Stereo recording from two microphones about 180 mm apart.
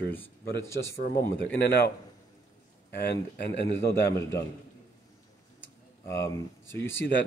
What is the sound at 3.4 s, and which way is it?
Speech, 10° left (ahead or behind).